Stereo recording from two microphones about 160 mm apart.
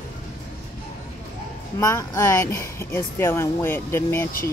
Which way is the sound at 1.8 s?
15° left (ahead or behind).